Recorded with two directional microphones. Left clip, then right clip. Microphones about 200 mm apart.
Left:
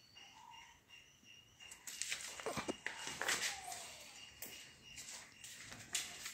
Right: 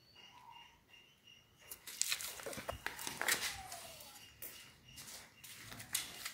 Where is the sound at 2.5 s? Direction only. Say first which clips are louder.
Left 6 dB; 25° left (ahead or behind).